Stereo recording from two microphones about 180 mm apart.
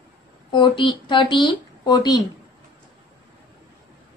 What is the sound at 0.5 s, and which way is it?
A woman's voice, 25° left (ahead or behind).